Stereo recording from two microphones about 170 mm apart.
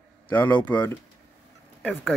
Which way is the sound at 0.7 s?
10° left (ahead or behind).